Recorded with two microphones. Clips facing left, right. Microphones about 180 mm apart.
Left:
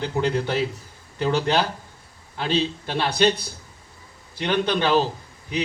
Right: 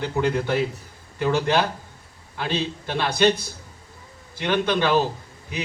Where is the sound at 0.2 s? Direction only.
50° right (ahead or behind).